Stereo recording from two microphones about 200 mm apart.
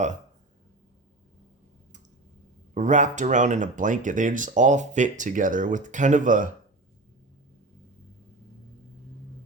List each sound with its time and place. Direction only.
2.7 s speech: 40° right (ahead or behind)